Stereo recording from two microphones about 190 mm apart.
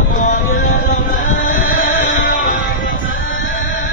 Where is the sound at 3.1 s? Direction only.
90° left.